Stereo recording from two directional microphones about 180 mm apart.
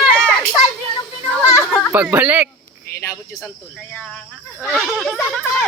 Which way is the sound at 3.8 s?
5° left (ahead or behind).